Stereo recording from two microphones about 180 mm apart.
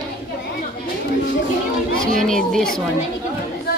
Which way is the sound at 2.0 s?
5° left (ahead or behind).